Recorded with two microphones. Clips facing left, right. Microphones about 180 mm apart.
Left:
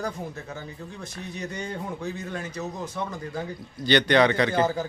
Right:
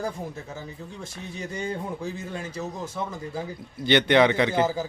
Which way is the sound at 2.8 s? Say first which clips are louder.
Even; 5° right (ahead or behind).